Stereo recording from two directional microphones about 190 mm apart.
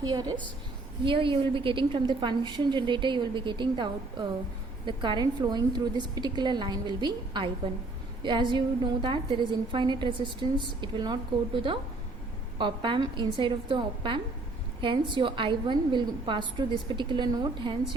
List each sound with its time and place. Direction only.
0.0 s a woman's voice: 20° right (ahead or behind)